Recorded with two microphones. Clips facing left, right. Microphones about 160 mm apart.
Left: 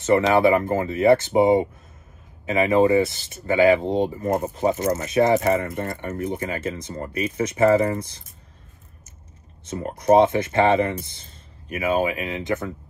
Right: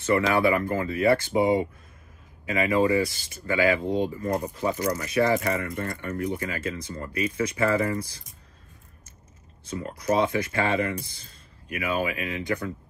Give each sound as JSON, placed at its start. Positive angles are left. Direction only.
{"t": 0.0, "sound": "speech", "side_deg": 25}
{"t": 10.0, "sound": "speech", "side_deg": 25}